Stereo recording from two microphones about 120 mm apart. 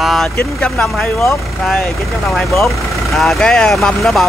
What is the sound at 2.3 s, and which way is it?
Speech, centre (ahead or behind).